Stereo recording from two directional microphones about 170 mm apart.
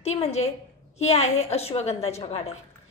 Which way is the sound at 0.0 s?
40° left (ahead or behind).